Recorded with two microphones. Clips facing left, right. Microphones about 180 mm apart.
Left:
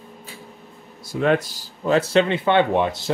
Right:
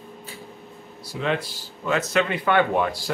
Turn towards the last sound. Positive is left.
turn(degrees=25)  # may be behind; listen again after turning